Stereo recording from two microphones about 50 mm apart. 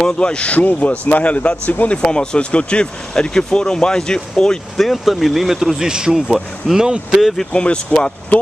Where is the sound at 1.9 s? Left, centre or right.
Centre.